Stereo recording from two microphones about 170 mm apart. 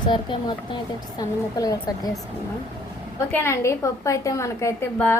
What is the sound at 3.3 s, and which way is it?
A woman's voice, 15° left (ahead or behind).